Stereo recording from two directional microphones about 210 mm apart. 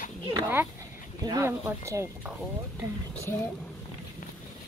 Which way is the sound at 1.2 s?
15° right (ahead or behind).